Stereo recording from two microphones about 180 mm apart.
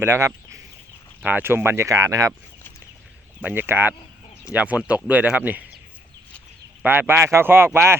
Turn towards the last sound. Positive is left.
turn(degrees=-15)  # may be behind; listen again after turning